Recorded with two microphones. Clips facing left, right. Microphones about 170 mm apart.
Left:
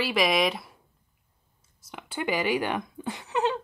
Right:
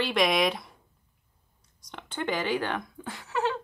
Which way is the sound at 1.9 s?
5° left (ahead or behind).